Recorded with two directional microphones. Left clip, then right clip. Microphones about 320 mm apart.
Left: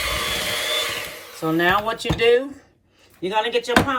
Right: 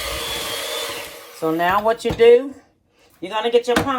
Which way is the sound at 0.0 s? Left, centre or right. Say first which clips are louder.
Left 2 dB; centre.